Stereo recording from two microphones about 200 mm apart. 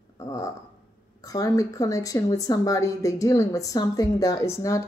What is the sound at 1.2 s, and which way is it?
A woman's voice, 15° left (ahead or behind).